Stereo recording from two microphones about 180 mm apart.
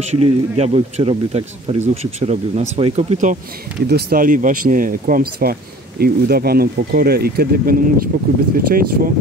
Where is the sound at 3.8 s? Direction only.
60° right (ahead or behind).